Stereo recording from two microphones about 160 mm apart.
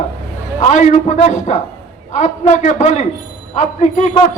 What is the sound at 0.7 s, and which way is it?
Speech, 50° left (ahead or behind).